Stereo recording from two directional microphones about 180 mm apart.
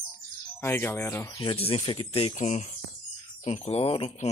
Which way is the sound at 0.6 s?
10° left (ahead or behind).